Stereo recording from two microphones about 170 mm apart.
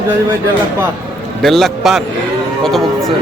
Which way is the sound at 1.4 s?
Centre (ahead or behind).